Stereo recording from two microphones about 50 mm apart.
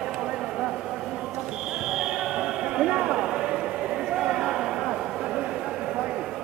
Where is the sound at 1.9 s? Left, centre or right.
Centre.